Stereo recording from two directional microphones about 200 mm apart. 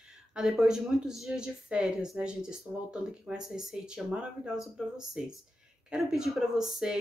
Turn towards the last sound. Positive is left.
turn(degrees=-5)  # may be behind; listen again after turning